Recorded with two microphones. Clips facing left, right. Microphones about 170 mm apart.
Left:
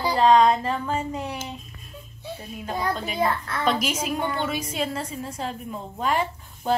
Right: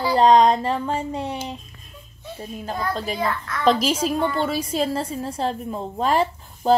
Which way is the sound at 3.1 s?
30° left (ahead or behind).